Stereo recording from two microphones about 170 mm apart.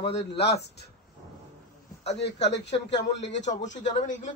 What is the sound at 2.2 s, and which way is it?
A man's voice, 85° left.